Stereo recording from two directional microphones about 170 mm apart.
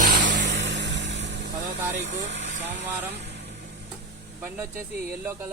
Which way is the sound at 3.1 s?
75° right (ahead or behind).